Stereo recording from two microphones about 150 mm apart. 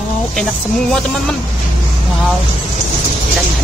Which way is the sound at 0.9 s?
5° left (ahead or behind).